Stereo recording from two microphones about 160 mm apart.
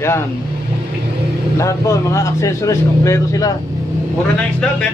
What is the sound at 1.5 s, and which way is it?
Speech, 20° left (ahead or behind).